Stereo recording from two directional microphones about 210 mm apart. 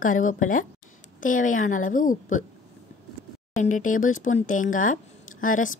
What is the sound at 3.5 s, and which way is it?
Speech, 35° left (ahead or behind).